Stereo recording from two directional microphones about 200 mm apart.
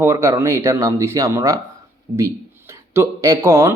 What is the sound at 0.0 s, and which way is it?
Speech, 15° right (ahead or behind).